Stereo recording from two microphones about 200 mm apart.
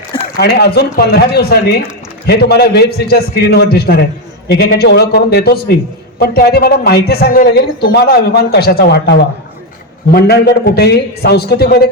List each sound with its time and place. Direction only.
0.3 s a man's voice: 55° left (ahead or behind)